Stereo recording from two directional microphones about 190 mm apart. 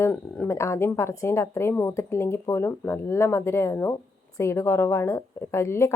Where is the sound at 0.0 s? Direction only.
10° left (ahead or behind).